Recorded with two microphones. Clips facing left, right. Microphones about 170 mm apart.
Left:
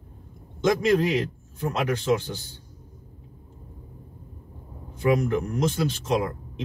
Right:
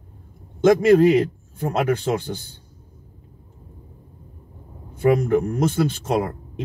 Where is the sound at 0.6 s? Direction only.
55° right (ahead or behind).